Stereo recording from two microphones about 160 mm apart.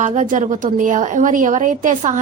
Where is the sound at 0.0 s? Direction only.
50° right (ahead or behind).